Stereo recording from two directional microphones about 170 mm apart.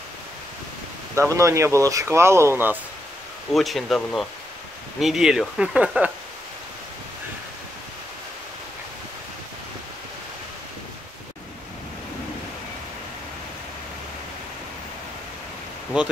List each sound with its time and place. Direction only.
1.1 s speech: 15° right (ahead or behind)
3.5 s speech: centre (ahead or behind)